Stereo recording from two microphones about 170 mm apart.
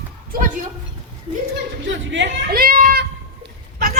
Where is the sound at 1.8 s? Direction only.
90° right.